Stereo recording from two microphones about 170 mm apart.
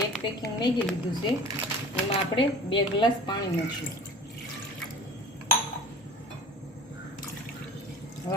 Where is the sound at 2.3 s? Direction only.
30° left (ahead or behind).